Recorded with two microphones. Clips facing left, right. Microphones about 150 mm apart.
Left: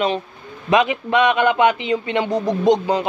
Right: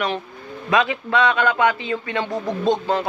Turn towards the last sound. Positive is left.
turn(degrees=15)  # may be behind; listen again after turning